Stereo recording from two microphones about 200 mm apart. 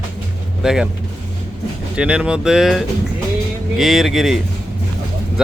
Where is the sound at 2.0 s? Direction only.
5° right (ahead or behind).